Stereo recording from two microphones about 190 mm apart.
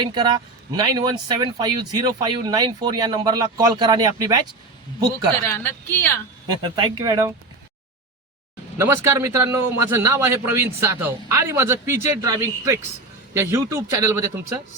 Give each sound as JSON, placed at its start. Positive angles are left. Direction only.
{"t": 0.0, "sound": "speech", "side_deg": -20}
{"t": 5.4, "sound": "speech", "side_deg": 10}
{"t": 6.6, "sound": "speech", "side_deg": -25}
{"t": 8.8, "sound": "a man's voice", "side_deg": -15}